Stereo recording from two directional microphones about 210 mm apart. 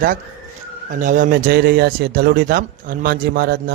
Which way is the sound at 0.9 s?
40° right (ahead or behind).